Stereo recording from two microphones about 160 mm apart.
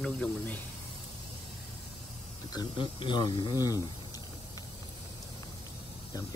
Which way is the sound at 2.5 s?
30° left (ahead or behind).